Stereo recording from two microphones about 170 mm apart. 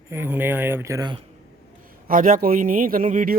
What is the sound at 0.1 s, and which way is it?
Speech, 10° right (ahead or behind).